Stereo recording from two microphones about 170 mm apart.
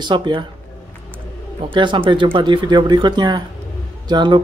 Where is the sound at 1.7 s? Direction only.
30° right (ahead or behind).